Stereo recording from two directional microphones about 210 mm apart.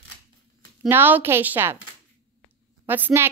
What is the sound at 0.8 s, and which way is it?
Speech, 10° right (ahead or behind).